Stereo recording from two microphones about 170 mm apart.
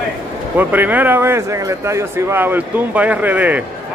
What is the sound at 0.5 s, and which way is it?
Speech, 10° right (ahead or behind).